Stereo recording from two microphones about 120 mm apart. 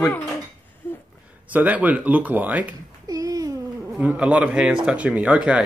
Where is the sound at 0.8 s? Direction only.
20° left (ahead or behind).